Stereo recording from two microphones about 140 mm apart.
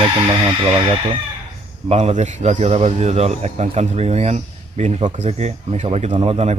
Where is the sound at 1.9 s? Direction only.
50° right (ahead or behind).